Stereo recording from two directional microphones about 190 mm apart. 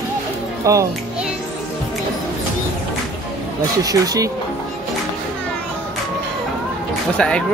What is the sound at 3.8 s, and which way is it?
Speech, 20° right (ahead or behind).